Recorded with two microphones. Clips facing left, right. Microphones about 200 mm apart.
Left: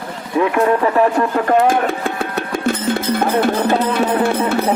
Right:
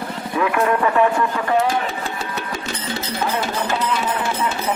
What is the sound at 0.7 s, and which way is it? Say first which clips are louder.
Speech: left 3 dB; 35° left (ahead or behind).